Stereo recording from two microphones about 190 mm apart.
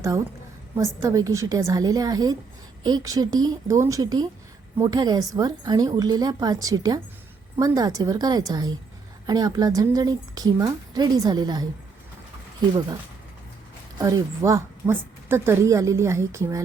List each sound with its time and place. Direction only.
0.8 s a woman's voice: 15° right (ahead or behind)
14.0 s a woman's voice: 20° right (ahead or behind)